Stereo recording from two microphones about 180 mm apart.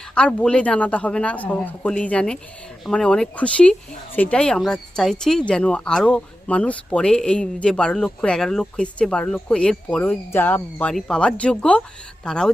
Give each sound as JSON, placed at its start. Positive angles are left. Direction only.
{"t": 0.1, "sound": "speech", "side_deg": 5}